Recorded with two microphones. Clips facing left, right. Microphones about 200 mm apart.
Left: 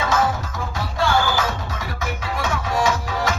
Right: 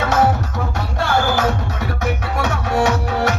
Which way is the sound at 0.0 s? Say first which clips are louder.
Right 4 dB; 65° right (ahead or behind).